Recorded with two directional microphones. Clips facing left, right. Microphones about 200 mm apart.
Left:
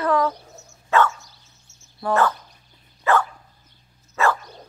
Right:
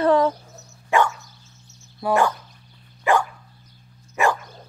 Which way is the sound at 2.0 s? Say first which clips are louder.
Right 1 dB; 15° right (ahead or behind).